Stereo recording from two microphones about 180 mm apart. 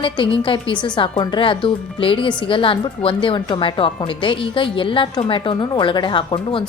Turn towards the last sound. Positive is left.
turn(degrees=25)  # may be behind; listen again after turning